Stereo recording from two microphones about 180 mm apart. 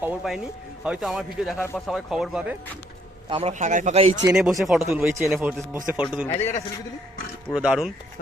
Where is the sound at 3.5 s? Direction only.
45° right (ahead or behind).